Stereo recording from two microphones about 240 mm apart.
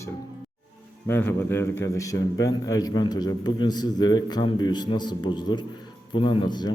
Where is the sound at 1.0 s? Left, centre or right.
Centre.